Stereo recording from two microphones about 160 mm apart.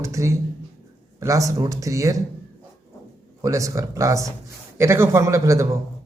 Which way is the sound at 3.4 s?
20° right (ahead or behind).